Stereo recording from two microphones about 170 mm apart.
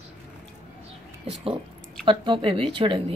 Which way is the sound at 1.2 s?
35° right (ahead or behind).